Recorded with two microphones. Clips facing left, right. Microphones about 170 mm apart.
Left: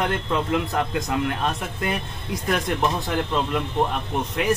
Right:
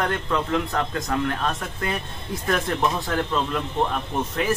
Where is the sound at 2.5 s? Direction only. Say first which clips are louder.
Even; 15° left (ahead or behind).